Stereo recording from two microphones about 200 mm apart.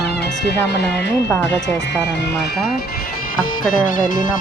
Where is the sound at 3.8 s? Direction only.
40° left (ahead or behind).